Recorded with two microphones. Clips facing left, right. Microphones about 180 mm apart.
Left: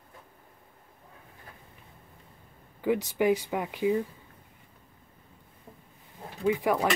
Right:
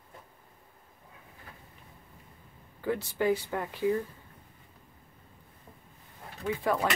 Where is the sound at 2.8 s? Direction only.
15° left (ahead or behind).